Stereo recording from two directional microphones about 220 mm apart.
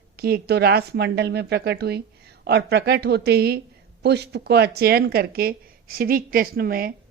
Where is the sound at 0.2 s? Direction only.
45° right (ahead or behind).